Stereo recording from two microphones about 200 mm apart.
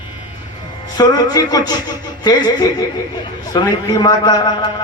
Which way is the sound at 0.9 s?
20° left (ahead or behind).